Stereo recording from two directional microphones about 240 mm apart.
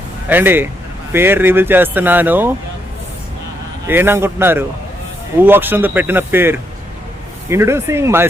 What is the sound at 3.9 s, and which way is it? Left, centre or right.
Speech, centre.